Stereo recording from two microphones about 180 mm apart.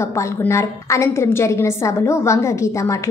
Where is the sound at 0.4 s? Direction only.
15° left (ahead or behind).